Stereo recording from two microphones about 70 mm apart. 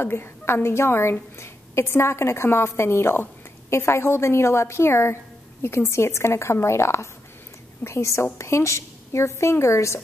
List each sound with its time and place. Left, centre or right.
0.0 s a woman's voice: left